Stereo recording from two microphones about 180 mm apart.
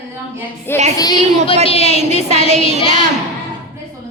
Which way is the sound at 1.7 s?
35° left (ahead or behind).